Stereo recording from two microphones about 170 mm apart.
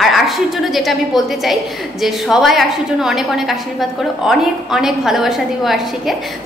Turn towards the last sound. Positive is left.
turn(degrees=0)  # may be behind; listen again after turning